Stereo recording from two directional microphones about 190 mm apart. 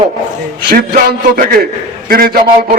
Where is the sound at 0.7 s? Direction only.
50° right (ahead or behind).